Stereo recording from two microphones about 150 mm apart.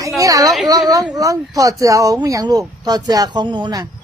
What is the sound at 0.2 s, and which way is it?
A woman's voice, 25° right (ahead or behind).